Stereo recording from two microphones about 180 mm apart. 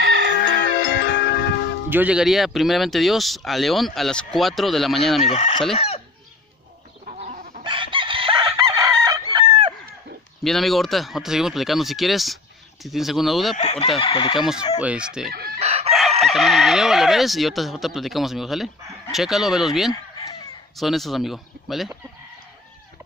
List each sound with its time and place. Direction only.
0.9 s church bell: 75° left (ahead or behind)
1.9 s speech: 10° right (ahead or behind)
5.3 s chicken: 30° left (ahead or behind)
7.1 s chicken: 40° right (ahead or behind)
7.6 s chicken: 30° right (ahead or behind)
10.4 s speech: centre (ahead or behind)
13.6 s chicken: 30° left (ahead or behind)
14.8 s speech: 5° right (ahead or behind)
15.3 s chicken: 60° right (ahead or behind)
15.6 s chicken: 35° right (ahead or behind)
16.2 s speech: centre (ahead or behind)
19.9 s chicken: 20° left (ahead or behind)
20.7 s speech: centre (ahead or behind)